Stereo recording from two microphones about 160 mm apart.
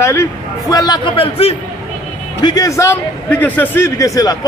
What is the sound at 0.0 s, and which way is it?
A man's voice, 15° left (ahead or behind).